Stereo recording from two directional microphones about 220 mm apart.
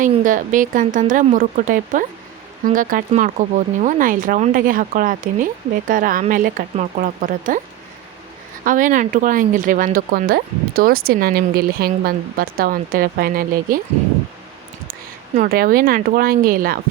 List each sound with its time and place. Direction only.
0.0 s speech: 35° right (ahead or behind)
8.6 s speech: 35° right (ahead or behind)
15.4 s speech: 40° right (ahead or behind)